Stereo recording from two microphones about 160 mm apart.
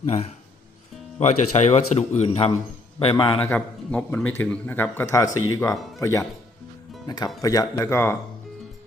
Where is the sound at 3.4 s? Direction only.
10° left (ahead or behind).